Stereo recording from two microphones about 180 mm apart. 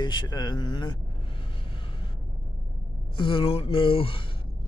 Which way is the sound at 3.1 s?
30° left (ahead or behind).